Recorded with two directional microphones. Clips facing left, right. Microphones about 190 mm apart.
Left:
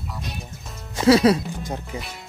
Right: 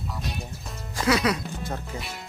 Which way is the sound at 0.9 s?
25° left (ahead or behind).